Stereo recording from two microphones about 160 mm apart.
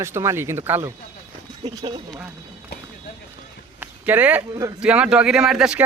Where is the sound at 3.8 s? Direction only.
10° right (ahead or behind).